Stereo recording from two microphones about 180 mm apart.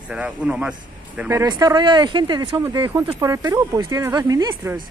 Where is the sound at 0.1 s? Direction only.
5° right (ahead or behind).